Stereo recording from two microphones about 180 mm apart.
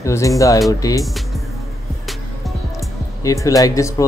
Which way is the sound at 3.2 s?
20° left (ahead or behind).